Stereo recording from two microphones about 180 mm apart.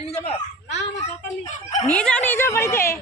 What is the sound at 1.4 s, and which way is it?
Speech, 40° left (ahead or behind).